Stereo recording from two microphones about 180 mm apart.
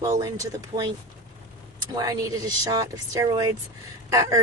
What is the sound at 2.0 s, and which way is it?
Speech, 20° right (ahead or behind).